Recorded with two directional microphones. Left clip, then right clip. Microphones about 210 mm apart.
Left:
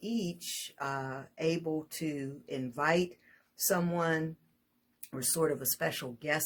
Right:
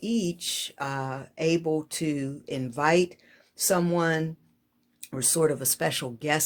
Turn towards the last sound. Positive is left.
turn(degrees=-50)  # may be behind; listen again after turning